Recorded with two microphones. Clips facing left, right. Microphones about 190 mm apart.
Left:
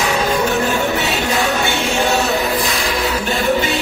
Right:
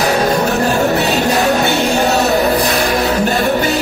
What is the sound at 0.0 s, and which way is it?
Music, 40° right (ahead or behind).